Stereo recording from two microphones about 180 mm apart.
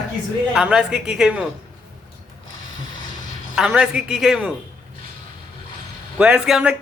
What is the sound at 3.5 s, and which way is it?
Speech, 5° right (ahead or behind).